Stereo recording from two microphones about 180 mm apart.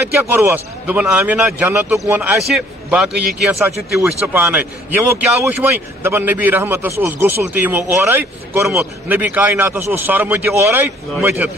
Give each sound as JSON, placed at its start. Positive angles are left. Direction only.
{"t": 0.2, "sound": "a man's voice", "side_deg": -10}